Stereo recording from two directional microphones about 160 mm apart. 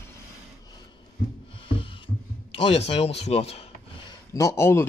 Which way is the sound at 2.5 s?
40° left (ahead or behind).